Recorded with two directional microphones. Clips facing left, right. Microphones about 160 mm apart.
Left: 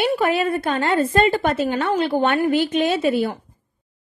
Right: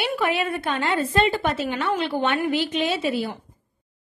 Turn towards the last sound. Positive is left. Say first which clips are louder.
# left 5 dB
turn(degrees=50)  # may be behind; listen again after turning